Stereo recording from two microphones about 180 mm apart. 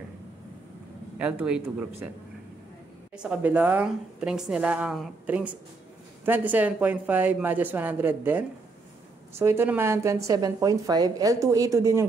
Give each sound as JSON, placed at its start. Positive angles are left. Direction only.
{"t": 1.1, "sound": "a woman's voice", "side_deg": -10}
{"t": 3.2, "sound": "a woman's voice", "side_deg": -5}